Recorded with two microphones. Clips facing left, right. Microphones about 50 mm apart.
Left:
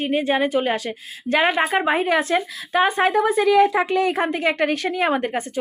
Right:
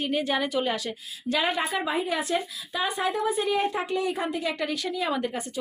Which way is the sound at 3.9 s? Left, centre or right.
Left.